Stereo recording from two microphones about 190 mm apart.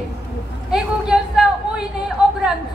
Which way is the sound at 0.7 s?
5° right (ahead or behind).